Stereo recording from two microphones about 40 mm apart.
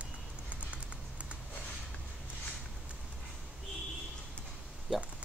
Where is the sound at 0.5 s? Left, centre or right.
Right.